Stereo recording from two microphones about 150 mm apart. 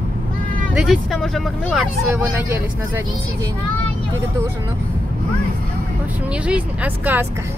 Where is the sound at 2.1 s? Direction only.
15° right (ahead or behind).